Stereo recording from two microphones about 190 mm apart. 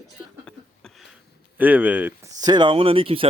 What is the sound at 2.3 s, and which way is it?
Speech, 20° right (ahead or behind).